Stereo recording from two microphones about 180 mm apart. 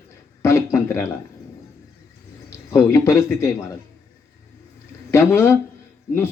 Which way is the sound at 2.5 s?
15° left (ahead or behind).